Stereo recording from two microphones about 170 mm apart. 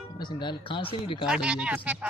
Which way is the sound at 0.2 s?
25° left (ahead or behind).